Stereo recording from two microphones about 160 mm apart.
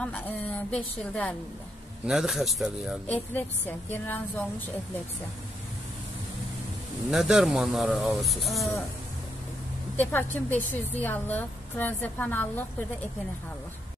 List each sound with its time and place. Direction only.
0.0 s a woman's voice: 5° left (ahead or behind)
3.1 s a woman's voice: 10° left (ahead or behind)
7.1 s speech: 5° right (ahead or behind)
9.9 s a woman's voice: 10° left (ahead or behind)